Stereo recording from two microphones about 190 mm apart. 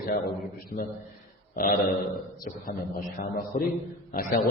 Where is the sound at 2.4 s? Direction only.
50° left (ahead or behind).